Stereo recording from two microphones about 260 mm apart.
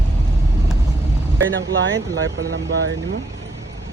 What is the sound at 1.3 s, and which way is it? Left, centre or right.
Speech, right.